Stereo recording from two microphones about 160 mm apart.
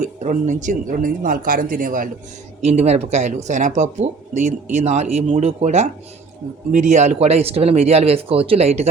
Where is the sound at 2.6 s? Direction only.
40° right (ahead or behind).